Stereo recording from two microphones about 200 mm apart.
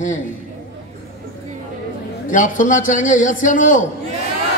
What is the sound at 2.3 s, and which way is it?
A man's voice, 40° left (ahead or behind).